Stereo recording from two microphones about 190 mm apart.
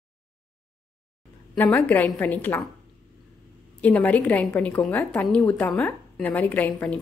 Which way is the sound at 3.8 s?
10° left (ahead or behind).